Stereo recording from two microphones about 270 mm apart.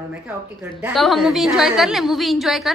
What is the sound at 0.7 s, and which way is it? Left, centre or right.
A woman's voice, centre.